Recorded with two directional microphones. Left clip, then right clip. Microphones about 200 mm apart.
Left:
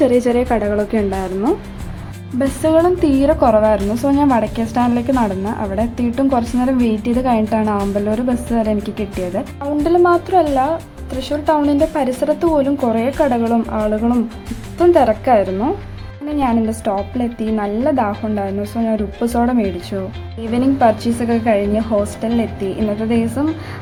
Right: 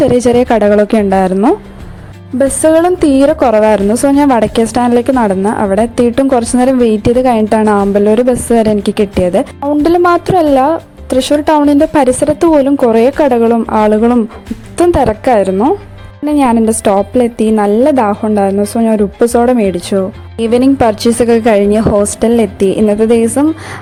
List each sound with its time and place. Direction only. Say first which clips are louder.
0.2 s a woman's voice: right 7 dB; 40° right (ahead or behind)